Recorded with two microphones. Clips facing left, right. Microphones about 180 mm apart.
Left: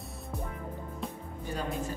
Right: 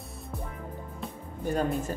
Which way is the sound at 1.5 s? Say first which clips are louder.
Right 6 dB; 50° right (ahead or behind).